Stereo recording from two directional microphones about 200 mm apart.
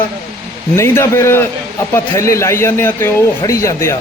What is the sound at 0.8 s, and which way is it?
A man's voice, 15° left (ahead or behind).